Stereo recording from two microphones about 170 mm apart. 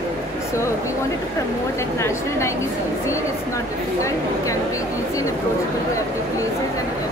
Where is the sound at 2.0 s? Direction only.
15° left (ahead or behind).